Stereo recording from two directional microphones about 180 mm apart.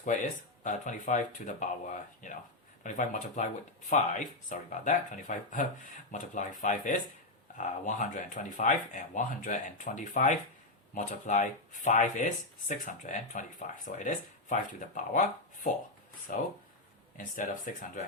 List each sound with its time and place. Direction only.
0.6 s speech: 45° left (ahead or behind)